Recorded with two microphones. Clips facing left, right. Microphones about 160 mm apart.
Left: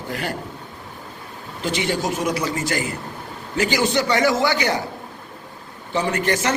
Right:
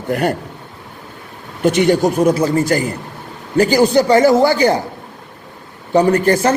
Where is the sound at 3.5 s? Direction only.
35° right (ahead or behind).